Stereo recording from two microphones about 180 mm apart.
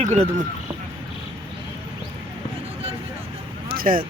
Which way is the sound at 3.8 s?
50° right (ahead or behind).